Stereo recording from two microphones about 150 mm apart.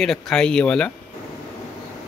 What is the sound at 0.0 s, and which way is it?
Speech, centre (ahead or behind).